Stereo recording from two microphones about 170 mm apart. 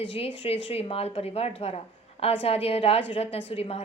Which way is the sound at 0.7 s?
35° left (ahead or behind).